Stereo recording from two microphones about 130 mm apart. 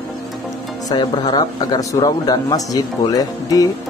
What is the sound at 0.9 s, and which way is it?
Speech, 30° left (ahead or behind).